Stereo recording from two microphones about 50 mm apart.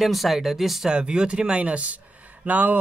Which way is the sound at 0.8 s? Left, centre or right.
Centre.